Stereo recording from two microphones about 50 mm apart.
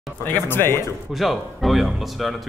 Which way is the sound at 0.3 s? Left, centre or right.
Left.